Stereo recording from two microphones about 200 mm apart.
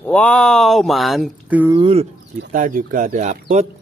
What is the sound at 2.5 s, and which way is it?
Speech, 45° right (ahead or behind).